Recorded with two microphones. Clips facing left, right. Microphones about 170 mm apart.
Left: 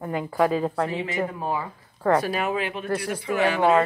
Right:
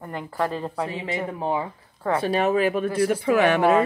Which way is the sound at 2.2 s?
35° right (ahead or behind).